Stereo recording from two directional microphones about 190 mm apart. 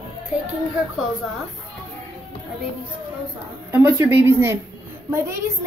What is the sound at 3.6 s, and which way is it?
A woman's voice, 10° right (ahead or behind).